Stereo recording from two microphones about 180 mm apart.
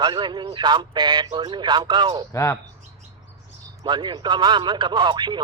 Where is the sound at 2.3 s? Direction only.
15° left (ahead or behind).